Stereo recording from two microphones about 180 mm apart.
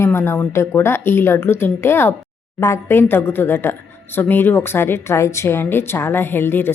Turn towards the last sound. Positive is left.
turn(degrees=10)  # may be behind; listen again after turning